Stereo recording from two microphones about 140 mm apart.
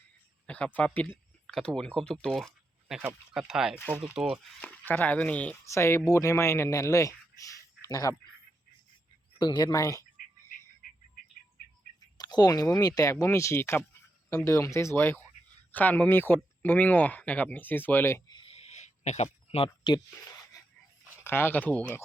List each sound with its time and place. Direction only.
0.4 s a sound: 10° left (ahead or behind)
0.9 s speech: 10° left (ahead or behind); by 3.8 s 5° right (ahead or behind)
3.8 s speech: 15° left (ahead or behind)
4.0 s speech: 5° right (ahead or behind)
4.6 s speech: 10° left (ahead or behind)
9.4 s speech: 30° left (ahead or behind)
12.1 s speech: 30° left (ahead or behind)
18.3 s a sound: 35° left (ahead or behind)
18.5 s a sound: 55° left (ahead or behind); by 20.0 s 35° left (ahead or behind)
21.2 s speech: 15° left (ahead or behind)